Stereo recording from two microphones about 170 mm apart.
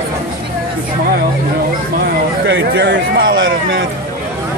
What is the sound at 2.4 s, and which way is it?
Speech, 90° right.